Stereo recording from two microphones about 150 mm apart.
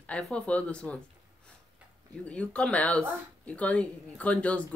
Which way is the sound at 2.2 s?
10° left (ahead or behind).